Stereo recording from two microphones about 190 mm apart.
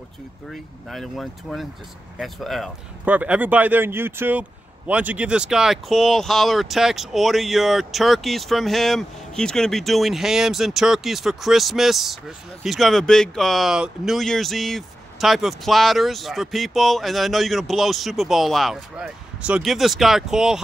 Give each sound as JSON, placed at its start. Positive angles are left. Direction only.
{"t": 0.5, "sound": "speech", "side_deg": 0}